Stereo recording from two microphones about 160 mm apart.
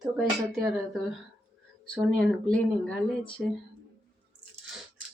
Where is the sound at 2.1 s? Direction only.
5° left (ahead or behind).